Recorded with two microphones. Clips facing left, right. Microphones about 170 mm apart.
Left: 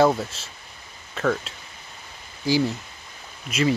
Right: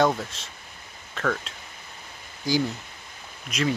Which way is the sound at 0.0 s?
5° left (ahead or behind).